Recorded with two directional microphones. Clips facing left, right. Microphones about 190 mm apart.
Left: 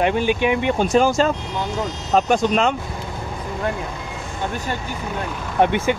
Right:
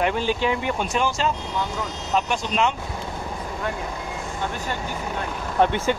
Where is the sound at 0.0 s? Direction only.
20° left (ahead or behind).